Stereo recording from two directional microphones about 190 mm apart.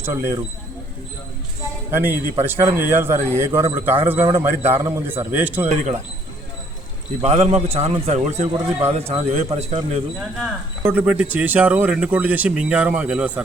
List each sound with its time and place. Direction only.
0.0 s speech: 15° right (ahead or behind)
1.9 s speech: 10° right (ahead or behind)
7.2 s a man's voice: 35° right (ahead or behind)
10.4 s speech: 5° right (ahead or behind)